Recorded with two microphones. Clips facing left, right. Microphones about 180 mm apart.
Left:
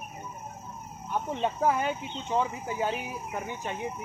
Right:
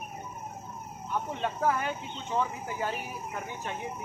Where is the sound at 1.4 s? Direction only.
15° left (ahead or behind).